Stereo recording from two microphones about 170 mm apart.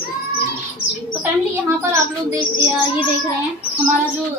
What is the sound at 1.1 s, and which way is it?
A woman's voice, 15° right (ahead or behind).